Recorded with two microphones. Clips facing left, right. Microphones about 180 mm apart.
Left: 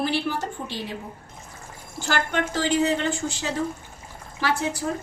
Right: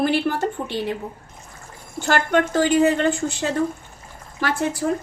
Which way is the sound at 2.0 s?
55° right (ahead or behind).